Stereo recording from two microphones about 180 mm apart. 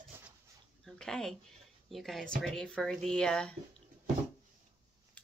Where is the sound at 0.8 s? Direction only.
5° left (ahead or behind).